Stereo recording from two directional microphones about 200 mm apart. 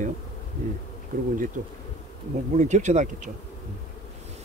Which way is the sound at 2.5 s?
35° right (ahead or behind).